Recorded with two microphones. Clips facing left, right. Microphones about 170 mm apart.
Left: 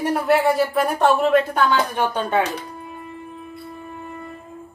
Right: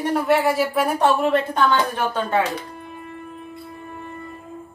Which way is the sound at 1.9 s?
20° left (ahead or behind).